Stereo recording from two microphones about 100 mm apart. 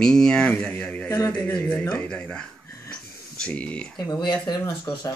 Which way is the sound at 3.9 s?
45° left (ahead or behind).